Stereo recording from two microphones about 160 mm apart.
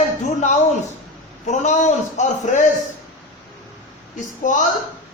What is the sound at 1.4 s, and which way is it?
A man's voice, 50° left (ahead or behind).